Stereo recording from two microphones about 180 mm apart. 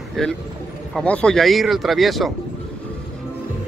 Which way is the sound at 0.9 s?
5° left (ahead or behind).